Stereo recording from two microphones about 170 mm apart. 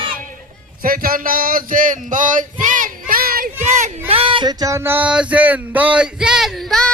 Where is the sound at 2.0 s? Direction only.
50° right (ahead or behind).